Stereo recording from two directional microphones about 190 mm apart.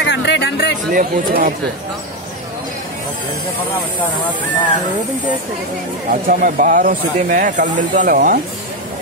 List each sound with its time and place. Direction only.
0.0 s a sound: 65° left (ahead or behind)
0.9 s speech: 45° right (ahead or behind)
6.2 s speech: 45° right (ahead or behind)